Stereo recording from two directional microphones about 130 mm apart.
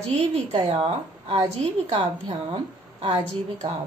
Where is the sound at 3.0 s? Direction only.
60° right (ahead or behind).